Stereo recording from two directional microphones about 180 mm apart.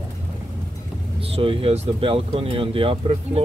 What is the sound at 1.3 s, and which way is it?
Speech, 30° right (ahead or behind).